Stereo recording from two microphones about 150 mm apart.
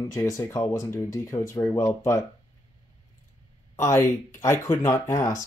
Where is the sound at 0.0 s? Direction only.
20° left (ahead or behind).